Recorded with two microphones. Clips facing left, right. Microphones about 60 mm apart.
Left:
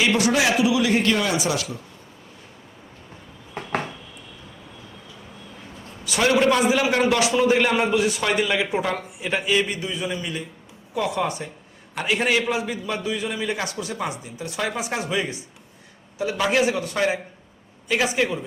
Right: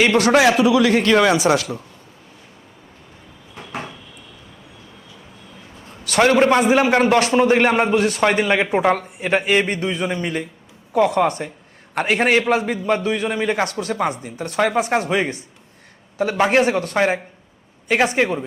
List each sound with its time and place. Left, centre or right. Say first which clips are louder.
0.0 s a man's voice: right 6 dB; right
6.1 s a man's voice: right 4 dB; right